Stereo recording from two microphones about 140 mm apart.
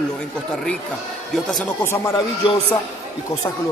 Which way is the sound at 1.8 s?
20° left (ahead or behind).